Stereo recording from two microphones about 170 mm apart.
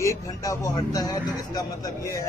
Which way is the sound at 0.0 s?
20° left (ahead or behind).